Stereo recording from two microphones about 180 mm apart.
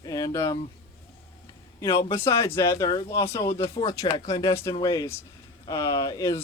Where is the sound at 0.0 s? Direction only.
20° left (ahead or behind).